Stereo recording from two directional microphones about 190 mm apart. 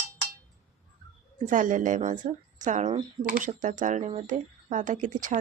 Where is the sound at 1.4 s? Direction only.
45° right (ahead or behind).